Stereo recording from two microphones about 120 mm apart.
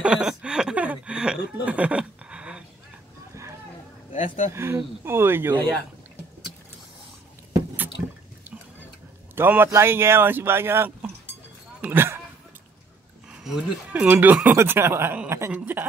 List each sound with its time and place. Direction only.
0.0 s chuckle: 5° right (ahead or behind)
4.5 s speech: 20° right (ahead or behind)
9.3 s speech: 20° right (ahead or behind)
13.3 s speech: 5° right (ahead or behind)